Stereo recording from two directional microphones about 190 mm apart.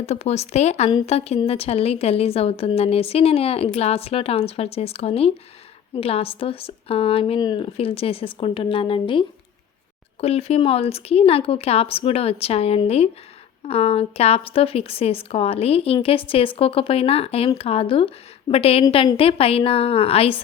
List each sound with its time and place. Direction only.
0.0 s a woman's voice: 35° left (ahead or behind)